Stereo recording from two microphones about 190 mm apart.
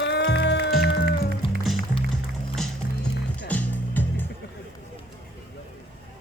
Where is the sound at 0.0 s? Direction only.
65° left (ahead or behind).